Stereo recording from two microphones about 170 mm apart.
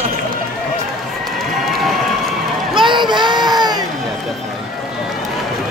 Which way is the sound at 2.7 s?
30° right (ahead or behind).